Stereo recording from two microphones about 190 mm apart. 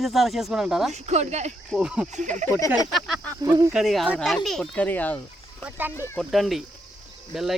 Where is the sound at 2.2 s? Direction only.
40° right (ahead or behind).